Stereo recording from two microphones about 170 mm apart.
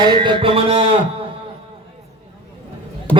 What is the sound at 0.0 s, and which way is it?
Speech, 30° right (ahead or behind).